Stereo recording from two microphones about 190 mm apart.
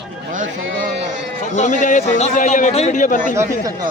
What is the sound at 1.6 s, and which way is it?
A man's voice, 40° left (ahead or behind).